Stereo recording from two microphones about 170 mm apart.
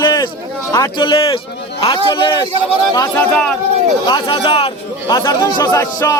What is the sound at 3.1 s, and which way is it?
Speech, 10° left (ahead or behind).